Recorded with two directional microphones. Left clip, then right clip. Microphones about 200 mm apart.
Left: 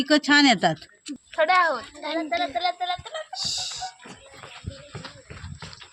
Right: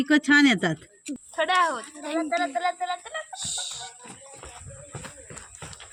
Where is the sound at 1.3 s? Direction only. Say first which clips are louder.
Left 3 dB; 10° left (ahead or behind).